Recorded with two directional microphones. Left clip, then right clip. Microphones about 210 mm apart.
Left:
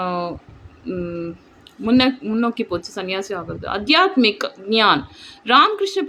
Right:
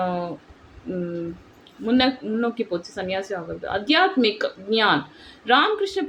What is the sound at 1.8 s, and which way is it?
Speech, 25° left (ahead or behind).